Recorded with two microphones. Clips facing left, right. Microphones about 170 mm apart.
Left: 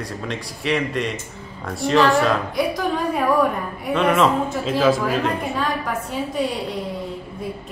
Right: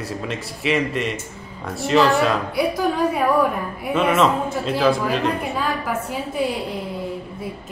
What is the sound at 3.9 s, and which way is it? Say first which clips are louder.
Speech: even; centre (ahead or behind).